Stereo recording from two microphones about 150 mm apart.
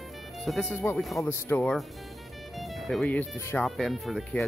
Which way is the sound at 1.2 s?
15° left (ahead or behind).